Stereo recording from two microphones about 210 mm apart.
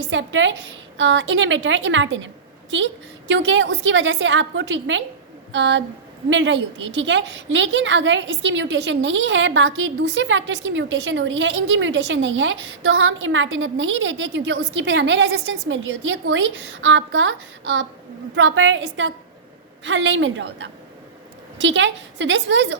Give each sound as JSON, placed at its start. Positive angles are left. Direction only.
{"t": 0.1, "sound": "a woman's voice", "side_deg": -60}